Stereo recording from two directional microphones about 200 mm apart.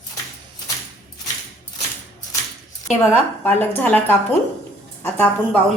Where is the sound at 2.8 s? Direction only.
10° left (ahead or behind).